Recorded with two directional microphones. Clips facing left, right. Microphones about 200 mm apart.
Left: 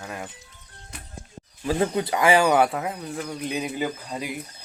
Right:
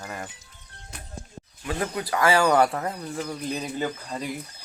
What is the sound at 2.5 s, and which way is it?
Speech, 5° left (ahead or behind).